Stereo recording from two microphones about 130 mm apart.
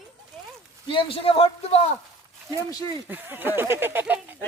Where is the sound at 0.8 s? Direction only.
45° left (ahead or behind).